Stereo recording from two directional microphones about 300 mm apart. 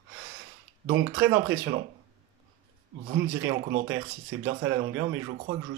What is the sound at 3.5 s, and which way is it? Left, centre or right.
Speech, right.